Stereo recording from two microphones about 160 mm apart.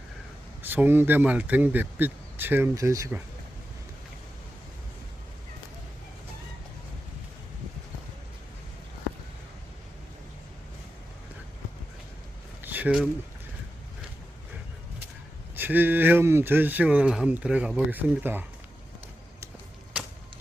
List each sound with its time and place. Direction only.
0.6 s speech: 10° right (ahead or behind)
12.6 s a sound: 10° right (ahead or behind)
15.5 s speech: 10° right (ahead or behind)